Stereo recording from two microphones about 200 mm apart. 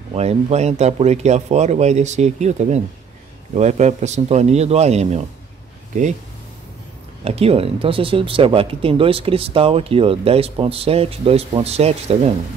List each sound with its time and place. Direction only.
0.1 s speech: 30° right (ahead or behind)
7.2 s speech: 30° right (ahead or behind)